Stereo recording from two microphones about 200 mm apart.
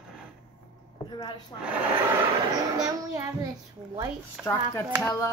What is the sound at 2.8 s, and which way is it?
Speech, 20° right (ahead or behind).